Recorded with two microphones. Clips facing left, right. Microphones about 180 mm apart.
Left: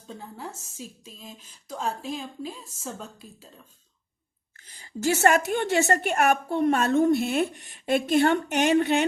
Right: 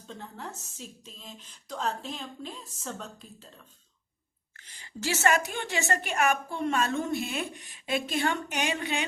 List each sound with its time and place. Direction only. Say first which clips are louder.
0.1 s a woman's voice: left 2 dB; 10° left (ahead or behind)
4.7 s a woman's voice: left 7 dB; 45° left (ahead or behind)